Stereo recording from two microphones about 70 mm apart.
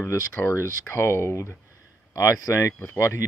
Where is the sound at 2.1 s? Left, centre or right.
Left.